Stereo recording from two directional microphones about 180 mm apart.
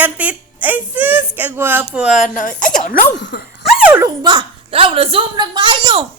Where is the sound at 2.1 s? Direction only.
45° left (ahead or behind).